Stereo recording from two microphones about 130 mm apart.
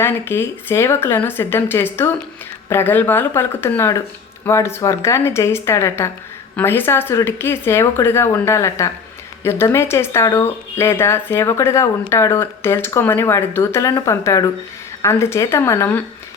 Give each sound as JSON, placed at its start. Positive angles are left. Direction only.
{"t": 0.0, "sound": "speech", "side_deg": 20}